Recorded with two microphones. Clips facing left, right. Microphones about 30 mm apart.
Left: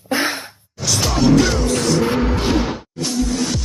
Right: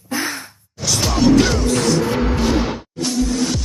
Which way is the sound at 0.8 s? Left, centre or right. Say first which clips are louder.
Right 1 dB; centre.